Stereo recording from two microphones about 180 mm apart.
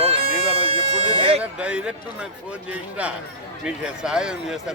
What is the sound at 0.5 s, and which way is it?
Speech, 30° right (ahead or behind).